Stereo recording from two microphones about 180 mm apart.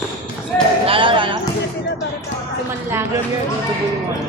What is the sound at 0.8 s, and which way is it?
Basketball bounce, 30° right (ahead or behind).